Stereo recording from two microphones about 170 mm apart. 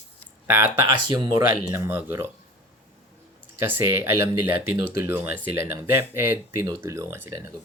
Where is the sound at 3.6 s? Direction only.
10° right (ahead or behind).